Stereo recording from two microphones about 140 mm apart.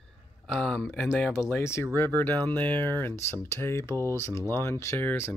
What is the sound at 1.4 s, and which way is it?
Speech, 20° left (ahead or behind).